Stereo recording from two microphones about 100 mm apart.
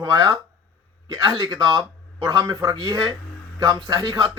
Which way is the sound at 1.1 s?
40° right (ahead or behind).